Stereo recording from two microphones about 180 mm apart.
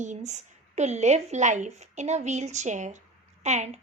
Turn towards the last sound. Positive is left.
turn(degrees=-40)  # may be behind; listen again after turning